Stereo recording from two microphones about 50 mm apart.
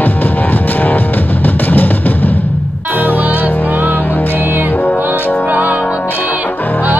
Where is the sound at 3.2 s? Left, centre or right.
Right.